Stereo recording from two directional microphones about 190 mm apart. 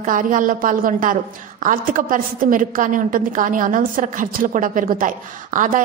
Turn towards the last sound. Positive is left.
turn(degrees=-45)  # may be behind; listen again after turning